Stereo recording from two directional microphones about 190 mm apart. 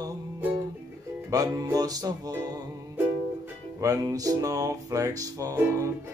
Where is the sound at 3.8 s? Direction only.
15° right (ahead or behind).